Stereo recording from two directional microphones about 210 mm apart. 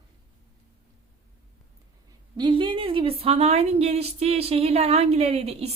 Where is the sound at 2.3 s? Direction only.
20° right (ahead or behind).